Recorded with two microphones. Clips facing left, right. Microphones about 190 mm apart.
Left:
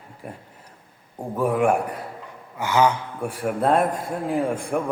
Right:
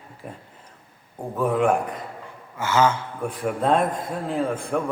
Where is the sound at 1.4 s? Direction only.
10° left (ahead or behind).